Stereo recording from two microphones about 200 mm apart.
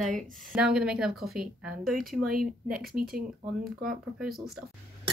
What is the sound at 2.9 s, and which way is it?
Speech, 45° right (ahead or behind).